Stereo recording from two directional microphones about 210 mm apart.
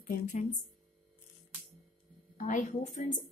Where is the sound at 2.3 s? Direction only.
35° left (ahead or behind).